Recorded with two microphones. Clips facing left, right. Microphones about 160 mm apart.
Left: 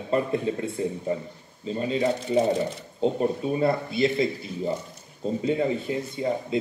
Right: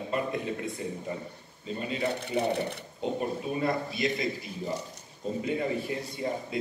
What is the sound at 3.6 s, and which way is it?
Speech, 30° left (ahead or behind).